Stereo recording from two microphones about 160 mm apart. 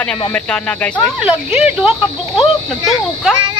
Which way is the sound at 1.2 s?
5° right (ahead or behind).